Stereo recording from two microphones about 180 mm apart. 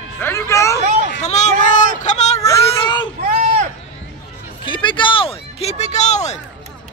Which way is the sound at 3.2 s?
50° right (ahead or behind).